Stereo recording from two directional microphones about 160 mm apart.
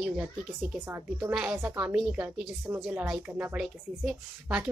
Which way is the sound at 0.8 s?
15° right (ahead or behind).